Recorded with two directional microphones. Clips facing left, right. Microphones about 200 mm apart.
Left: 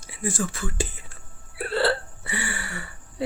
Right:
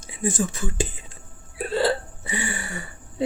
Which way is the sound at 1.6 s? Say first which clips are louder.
Right 1 dB; 15° right (ahead or behind).